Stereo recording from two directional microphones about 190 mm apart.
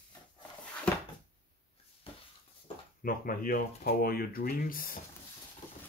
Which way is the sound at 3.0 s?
50° left (ahead or behind).